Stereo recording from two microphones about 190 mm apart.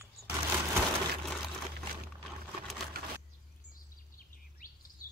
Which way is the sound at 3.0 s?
55° right (ahead or behind).